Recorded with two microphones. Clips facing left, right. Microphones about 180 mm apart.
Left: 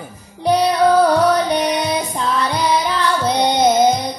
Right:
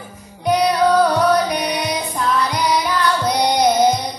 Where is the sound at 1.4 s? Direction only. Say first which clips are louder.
Left 3 dB; 35° left (ahead or behind).